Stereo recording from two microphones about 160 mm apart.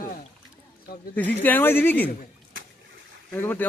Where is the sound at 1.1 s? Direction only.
10° left (ahead or behind).